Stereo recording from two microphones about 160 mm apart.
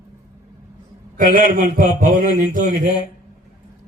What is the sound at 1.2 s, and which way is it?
A man's voice, 60° right (ahead or behind).